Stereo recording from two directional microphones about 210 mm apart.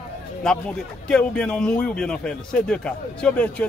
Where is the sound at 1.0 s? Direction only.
5° left (ahead or behind).